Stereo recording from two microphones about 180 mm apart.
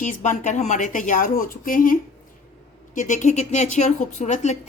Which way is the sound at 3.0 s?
45° left (ahead or behind).